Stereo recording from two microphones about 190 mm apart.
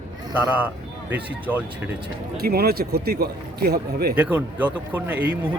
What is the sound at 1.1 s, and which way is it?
Speech, 10° right (ahead or behind).